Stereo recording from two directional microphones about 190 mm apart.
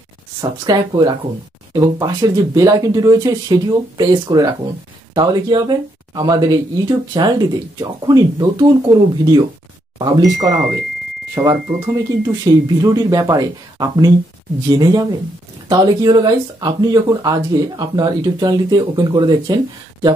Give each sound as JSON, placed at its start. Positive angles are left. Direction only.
{"t": 0.4, "sound": "speech", "side_deg": -20}
{"t": 11.6, "sound": "speech", "side_deg": -15}